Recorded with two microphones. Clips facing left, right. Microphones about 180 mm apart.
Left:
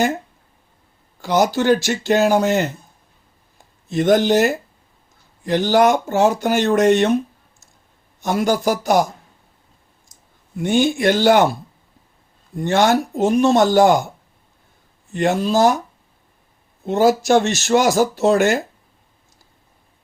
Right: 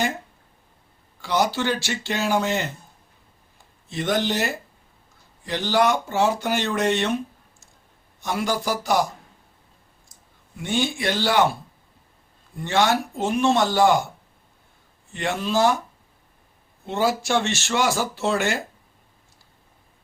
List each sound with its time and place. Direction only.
1.2 s speech: 45° left (ahead or behind)
3.8 s speech: 45° left (ahead or behind)
8.2 s speech: 45° left (ahead or behind)
10.6 s speech: 45° left (ahead or behind)
12.5 s speech: 45° left (ahead or behind)
15.1 s speech: 40° left (ahead or behind)
16.8 s speech: 45° left (ahead or behind)